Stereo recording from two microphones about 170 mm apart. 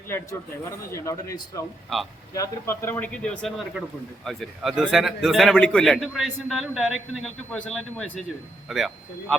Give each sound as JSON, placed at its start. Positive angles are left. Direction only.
{"t": 0.9, "sound": "a man's voice", "side_deg": 15}